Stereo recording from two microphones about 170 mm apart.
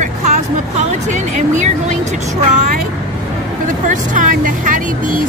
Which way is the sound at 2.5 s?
50° right (ahead or behind).